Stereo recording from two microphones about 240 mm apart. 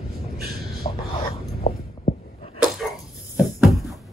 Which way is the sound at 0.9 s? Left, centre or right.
Left.